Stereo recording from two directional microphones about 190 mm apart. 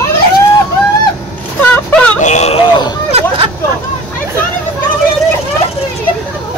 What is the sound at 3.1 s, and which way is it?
Vehicle, 30° right (ahead or behind).